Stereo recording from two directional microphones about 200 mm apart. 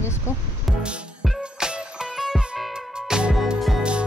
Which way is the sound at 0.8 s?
5° right (ahead or behind).